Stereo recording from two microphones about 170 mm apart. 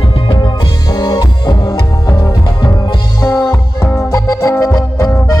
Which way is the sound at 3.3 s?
15° left (ahead or behind).